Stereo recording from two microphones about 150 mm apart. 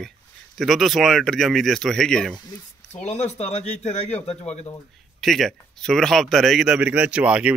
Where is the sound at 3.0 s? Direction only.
45° left (ahead or behind).